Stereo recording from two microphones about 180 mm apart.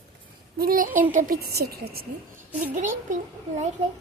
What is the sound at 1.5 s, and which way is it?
Speech, 60° right (ahead or behind).